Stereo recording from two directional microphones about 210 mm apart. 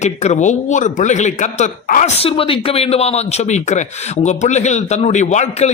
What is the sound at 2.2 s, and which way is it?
Speech, 25° left (ahead or behind).